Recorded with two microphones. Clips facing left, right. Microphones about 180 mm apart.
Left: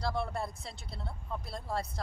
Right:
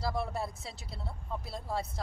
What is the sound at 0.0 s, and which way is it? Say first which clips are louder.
Speech: even; 5° right (ahead or behind).